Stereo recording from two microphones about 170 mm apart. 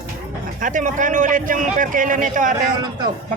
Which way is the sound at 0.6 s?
50° right (ahead or behind).